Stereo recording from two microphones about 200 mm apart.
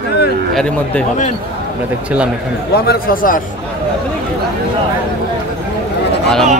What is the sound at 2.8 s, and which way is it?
Speech, 45° left (ahead or behind).